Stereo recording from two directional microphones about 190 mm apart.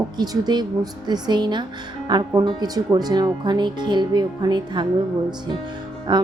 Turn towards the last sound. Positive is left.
turn(degrees=-25)  # may be behind; listen again after turning